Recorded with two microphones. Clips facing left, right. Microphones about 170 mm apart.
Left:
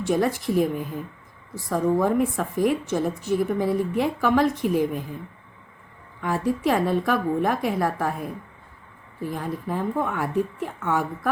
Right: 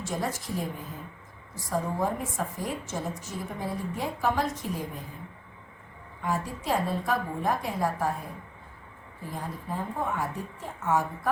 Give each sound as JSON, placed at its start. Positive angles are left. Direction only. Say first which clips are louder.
{"t": 0.0, "sound": "a woman's voice", "louder": "left 9 dB", "side_deg": 70}
{"t": 1.7, "sound": "a woman's voice", "louder": "left 8 dB", "side_deg": 70}
{"t": 6.2, "sound": "a woman's voice", "louder": "left 7 dB", "side_deg": 75}
{"t": 9.3, "sound": "a woman's voice", "louder": "left 6 dB", "side_deg": 75}